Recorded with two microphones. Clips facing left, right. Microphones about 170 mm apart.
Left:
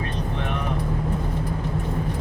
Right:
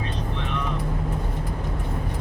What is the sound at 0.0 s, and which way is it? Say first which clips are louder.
Vehicle: left 2 dB; 55° left (ahead or behind).